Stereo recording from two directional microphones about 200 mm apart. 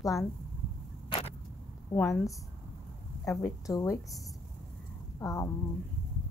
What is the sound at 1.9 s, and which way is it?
A woman's voice, 15° left (ahead or behind).